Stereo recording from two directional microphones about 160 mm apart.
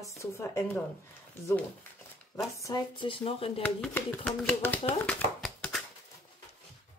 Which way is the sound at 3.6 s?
10° left (ahead or behind).